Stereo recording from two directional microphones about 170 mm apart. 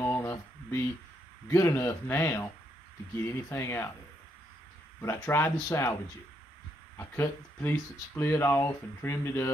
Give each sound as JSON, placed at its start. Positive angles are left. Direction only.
{"t": 0.0, "sound": "a sound", "side_deg": 15}
{"t": 1.5, "sound": "speech", "side_deg": 15}
{"t": 5.0, "sound": "speech", "side_deg": 15}
{"t": 7.0, "sound": "speech", "side_deg": 15}